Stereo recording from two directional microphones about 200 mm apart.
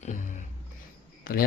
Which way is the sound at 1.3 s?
45° left (ahead or behind).